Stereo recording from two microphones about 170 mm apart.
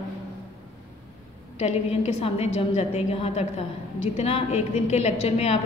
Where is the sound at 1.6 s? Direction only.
35° left (ahead or behind).